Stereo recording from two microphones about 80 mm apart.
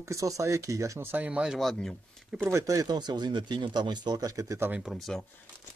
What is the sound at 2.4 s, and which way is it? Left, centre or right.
Speech, right.